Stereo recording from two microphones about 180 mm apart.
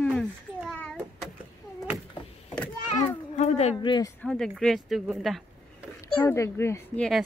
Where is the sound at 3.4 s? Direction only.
35° left (ahead or behind).